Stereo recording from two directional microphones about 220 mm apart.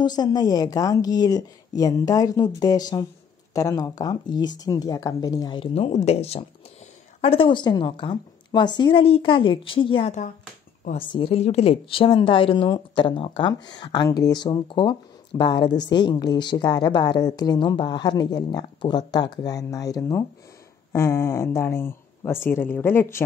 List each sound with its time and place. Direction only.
0.0 s a woman's voice: 20° left (ahead or behind)